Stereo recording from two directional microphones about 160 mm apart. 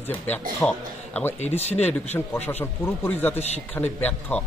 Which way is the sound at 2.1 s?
15° left (ahead or behind).